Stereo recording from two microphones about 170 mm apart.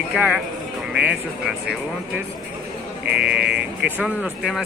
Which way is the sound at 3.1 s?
10° right (ahead or behind).